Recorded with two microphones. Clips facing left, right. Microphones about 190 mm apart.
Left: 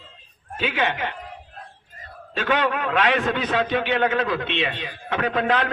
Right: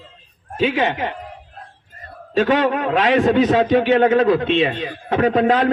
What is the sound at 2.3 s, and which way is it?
A man's voice, 35° right (ahead or behind).